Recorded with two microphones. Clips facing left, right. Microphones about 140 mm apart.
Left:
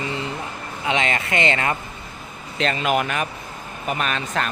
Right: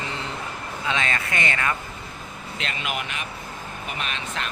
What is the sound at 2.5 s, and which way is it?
Speech, 40° left (ahead or behind).